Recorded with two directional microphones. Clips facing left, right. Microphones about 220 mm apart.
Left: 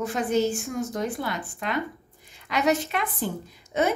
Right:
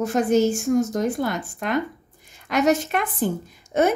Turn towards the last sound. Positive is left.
turn(degrees=-50)  # may be behind; listen again after turning